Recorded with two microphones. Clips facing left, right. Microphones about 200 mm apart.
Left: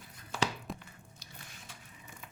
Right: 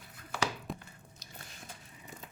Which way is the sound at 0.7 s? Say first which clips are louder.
Right 1 dB; centre (ahead or behind).